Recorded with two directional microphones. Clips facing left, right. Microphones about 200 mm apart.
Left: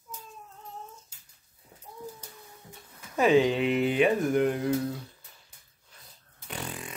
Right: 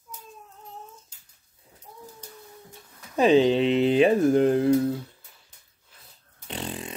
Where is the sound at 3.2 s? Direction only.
25° right (ahead or behind).